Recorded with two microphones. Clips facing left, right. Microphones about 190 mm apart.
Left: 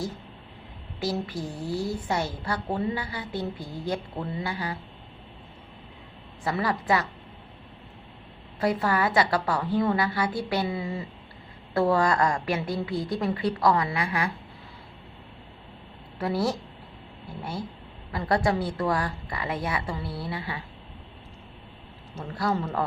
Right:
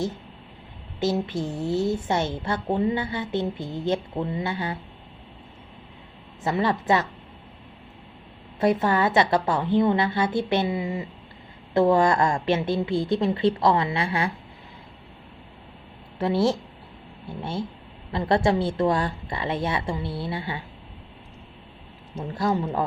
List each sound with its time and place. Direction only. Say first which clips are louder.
0.9 s a woman's voice: right 5 dB; 25° right (ahead or behind)
6.4 s a woman's voice: right 4 dB; 25° right (ahead or behind)
8.6 s a woman's voice: right 4 dB; 25° right (ahead or behind)
16.1 s a woman's voice: right 4 dB; 25° right (ahead or behind)
22.3 s a woman's voice: right 3 dB; 25° right (ahead or behind)